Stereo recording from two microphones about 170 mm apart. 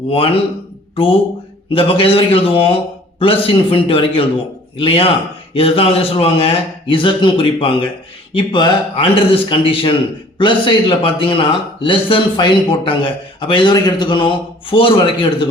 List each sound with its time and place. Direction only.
1.7 s a man's voice: 30° left (ahead or behind)